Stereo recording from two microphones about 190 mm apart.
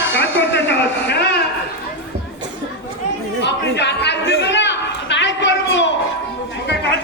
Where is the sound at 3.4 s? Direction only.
65° left (ahead or behind).